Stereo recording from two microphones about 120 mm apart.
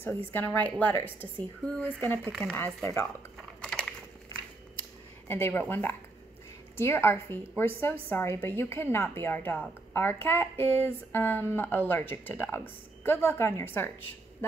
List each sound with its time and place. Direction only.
0.0 s a woman's voice: 15° left (ahead or behind)
3.3 s biting: 5° left (ahead or behind)
5.3 s a woman's voice: 20° left (ahead or behind)